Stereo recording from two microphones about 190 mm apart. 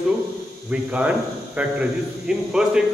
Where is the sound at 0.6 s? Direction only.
5° right (ahead or behind).